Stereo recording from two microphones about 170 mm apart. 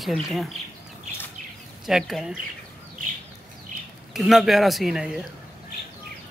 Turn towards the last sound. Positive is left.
turn(degrees=-5)  # may be behind; listen again after turning